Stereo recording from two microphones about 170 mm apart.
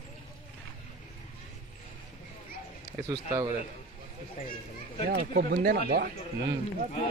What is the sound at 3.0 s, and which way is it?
Speech, 20° right (ahead or behind).